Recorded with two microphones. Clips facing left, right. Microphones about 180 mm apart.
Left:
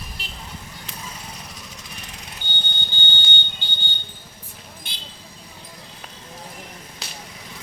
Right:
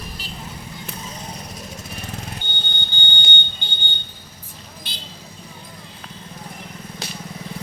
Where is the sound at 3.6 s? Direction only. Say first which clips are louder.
Right 2 dB; 20° right (ahead or behind).